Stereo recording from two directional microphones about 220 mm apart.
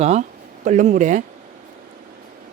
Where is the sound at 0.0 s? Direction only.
30° right (ahead or behind).